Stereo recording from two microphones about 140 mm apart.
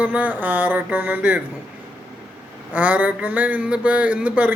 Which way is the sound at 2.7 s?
10° right (ahead or behind).